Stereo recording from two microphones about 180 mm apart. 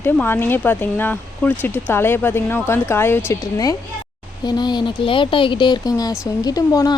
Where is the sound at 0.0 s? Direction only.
10° left (ahead or behind).